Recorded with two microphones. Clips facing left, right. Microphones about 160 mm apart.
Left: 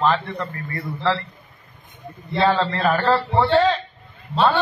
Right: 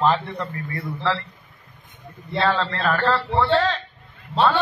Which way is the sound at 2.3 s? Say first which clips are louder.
Left 3 dB; 10° left (ahead or behind).